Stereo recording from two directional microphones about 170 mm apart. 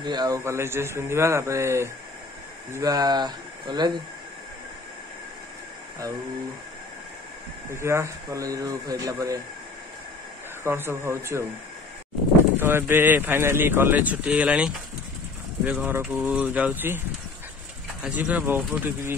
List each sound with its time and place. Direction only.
0.0 s speech: 25° right (ahead or behind)
0.4 s speech: 15° right (ahead or behind)
7.7 s speech: 15° right (ahead or behind)
10.6 s speech: 15° right (ahead or behind)
12.5 s speech: 15° right (ahead or behind)
18.0 s speech: 10° right (ahead or behind)